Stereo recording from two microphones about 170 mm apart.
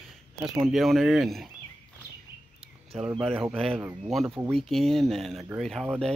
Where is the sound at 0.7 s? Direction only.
Centre (ahead or behind).